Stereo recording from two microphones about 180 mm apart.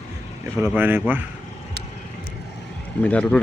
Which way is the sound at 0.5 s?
10° right (ahead or behind).